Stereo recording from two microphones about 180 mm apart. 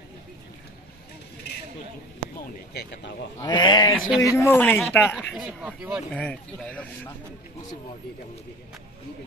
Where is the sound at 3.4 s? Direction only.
25° left (ahead or behind).